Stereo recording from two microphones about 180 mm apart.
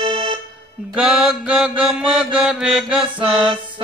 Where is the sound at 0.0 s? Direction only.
25° right (ahead or behind).